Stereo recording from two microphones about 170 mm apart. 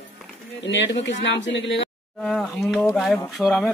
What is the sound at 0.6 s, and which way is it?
Speech, 90° left.